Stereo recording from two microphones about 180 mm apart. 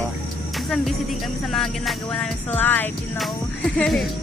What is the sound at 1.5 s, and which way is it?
Music, centre (ahead or behind).